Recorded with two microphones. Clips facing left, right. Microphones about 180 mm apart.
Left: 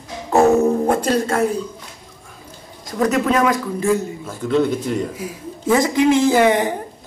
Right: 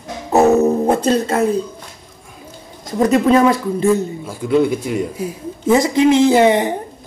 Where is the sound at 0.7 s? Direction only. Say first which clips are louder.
Right 2 dB; 20° right (ahead or behind).